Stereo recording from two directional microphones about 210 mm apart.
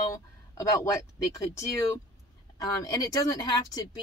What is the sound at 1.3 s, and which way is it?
Speech, 15° left (ahead or behind).